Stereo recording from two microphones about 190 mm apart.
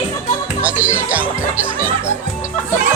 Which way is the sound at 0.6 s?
10° right (ahead or behind).